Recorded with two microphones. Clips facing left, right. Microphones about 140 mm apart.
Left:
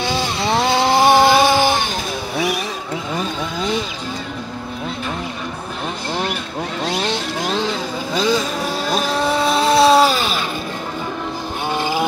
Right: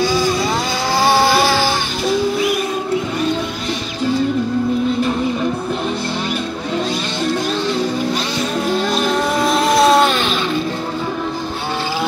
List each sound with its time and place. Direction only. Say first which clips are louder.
0.0 s vehicle: right 4 dB; 25° left (ahead or behind)
9.8 s vehicle: left 1 dB; centre (ahead or behind)